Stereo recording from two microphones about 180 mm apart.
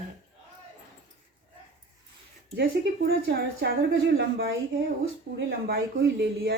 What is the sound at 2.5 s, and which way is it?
Speech, 65° right (ahead or behind).